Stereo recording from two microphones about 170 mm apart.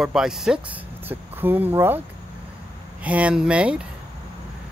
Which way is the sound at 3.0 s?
10° right (ahead or behind).